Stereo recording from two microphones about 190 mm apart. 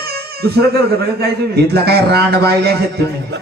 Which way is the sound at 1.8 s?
55° right (ahead or behind).